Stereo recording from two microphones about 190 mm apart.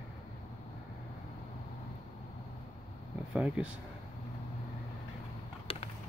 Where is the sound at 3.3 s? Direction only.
5° right (ahead or behind).